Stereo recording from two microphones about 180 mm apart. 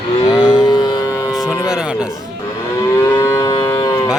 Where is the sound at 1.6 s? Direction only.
5° right (ahead or behind).